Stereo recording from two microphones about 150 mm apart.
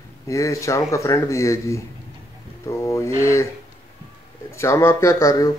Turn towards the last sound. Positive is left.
turn(degrees=20)  # may be behind; listen again after turning